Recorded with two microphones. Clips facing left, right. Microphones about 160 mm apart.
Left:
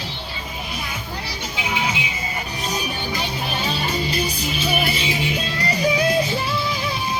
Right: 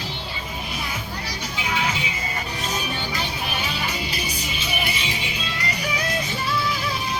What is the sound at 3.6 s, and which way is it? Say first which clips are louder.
Music: left 4 dB; 30° left (ahead or behind).